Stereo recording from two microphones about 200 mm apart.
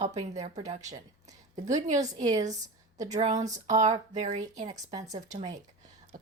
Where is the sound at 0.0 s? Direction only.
35° right (ahead or behind).